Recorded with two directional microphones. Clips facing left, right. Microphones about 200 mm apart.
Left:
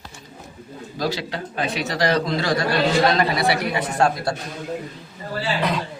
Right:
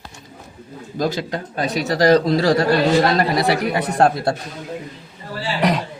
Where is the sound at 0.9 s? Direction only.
50° right (ahead or behind).